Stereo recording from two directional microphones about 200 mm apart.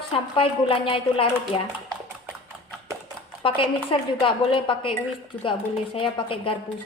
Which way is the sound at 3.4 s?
25° left (ahead or behind).